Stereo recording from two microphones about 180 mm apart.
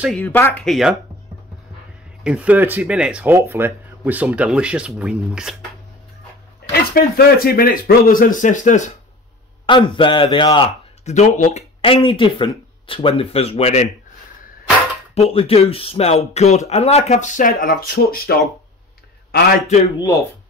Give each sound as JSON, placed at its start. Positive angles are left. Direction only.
{"t": 0.2, "sound": "speech", "side_deg": 15}
{"t": 0.7, "sound": "speech", "side_deg": 0}
{"t": 2.2, "sound": "speech", "side_deg": -5}
{"t": 6.7, "sound": "speech", "side_deg": 60}
{"t": 9.7, "sound": "a man's voice", "side_deg": 25}
{"t": 11.8, "sound": "speech", "side_deg": 30}
{"t": 15.1, "sound": "speech", "side_deg": 35}
{"t": 20.0, "sound": "speech", "side_deg": 15}